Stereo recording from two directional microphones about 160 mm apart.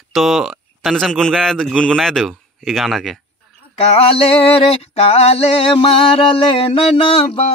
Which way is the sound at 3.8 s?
35° left (ahead or behind).